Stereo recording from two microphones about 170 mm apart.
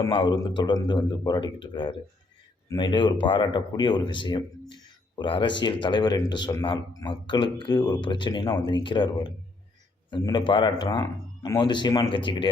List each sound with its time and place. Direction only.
0.0 s speech: 30° left (ahead or behind)